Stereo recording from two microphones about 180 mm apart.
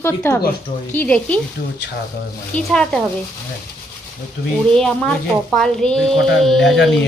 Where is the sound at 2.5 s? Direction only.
5° left (ahead or behind).